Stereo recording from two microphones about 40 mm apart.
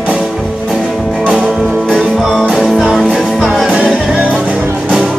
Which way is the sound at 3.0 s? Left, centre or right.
Centre.